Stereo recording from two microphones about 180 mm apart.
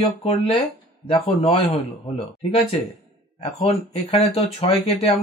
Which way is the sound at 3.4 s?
30° left (ahead or behind).